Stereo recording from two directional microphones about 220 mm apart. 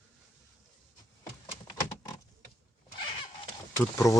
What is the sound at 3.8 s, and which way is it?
Speech, 15° left (ahead or behind).